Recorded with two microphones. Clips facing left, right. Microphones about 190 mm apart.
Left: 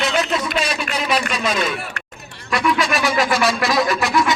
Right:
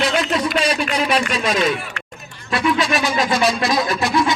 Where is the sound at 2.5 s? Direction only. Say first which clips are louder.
Right 1 dB; 25° right (ahead or behind).